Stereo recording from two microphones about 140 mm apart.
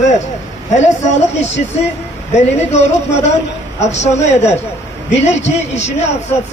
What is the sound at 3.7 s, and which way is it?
A man's voice, 55° left (ahead or behind).